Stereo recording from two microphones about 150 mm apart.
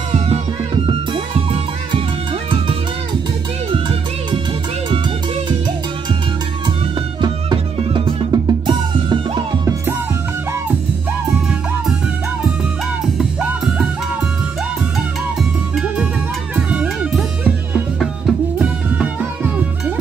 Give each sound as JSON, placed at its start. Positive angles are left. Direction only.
{"t": 0.8, "sound": "music", "side_deg": -35}
{"t": 7.2, "sound": "music", "side_deg": -30}
{"t": 13.2, "sound": "music", "side_deg": -10}
{"t": 15.7, "sound": "music", "side_deg": -5}
{"t": 18.6, "sound": "music", "side_deg": -10}